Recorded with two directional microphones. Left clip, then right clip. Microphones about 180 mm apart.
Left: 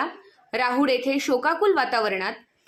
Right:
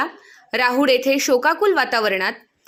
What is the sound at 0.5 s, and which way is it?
A woman's voice, 20° right (ahead or behind).